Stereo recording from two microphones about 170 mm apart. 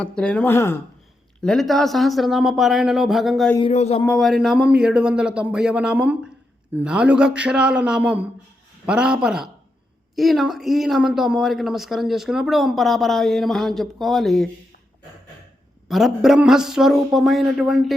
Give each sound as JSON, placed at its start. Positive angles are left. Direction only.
{"t": 0.0, "sound": "speech", "side_deg": 5}
{"t": 1.4, "sound": "speech", "side_deg": 0}
{"t": 3.6, "sound": "speech", "side_deg": 40}
{"t": 4.0, "sound": "speech", "side_deg": 5}
{"t": 15.9, "sound": "speech", "side_deg": 0}